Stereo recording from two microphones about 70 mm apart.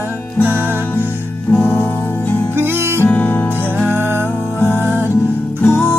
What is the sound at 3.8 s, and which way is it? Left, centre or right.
Music, right.